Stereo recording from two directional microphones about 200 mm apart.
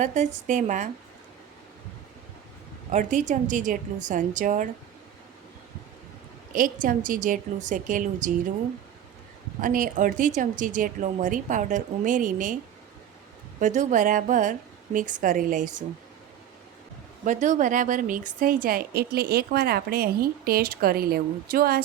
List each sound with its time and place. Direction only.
0.0 s a woman's voice: 35° right (ahead or behind)
2.9 s a woman's voice: 40° right (ahead or behind)
6.5 s a woman's voice: 45° right (ahead or behind)
9.6 s a woman's voice: 45° right (ahead or behind)
13.6 s a woman's voice: 40° right (ahead or behind)
17.2 s a woman's voice: 40° right (ahead or behind)